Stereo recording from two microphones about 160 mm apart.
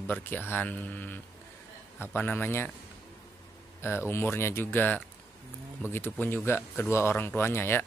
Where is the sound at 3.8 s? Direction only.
15° left (ahead or behind).